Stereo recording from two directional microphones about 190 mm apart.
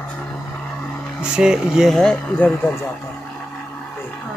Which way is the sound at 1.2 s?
5° right (ahead or behind).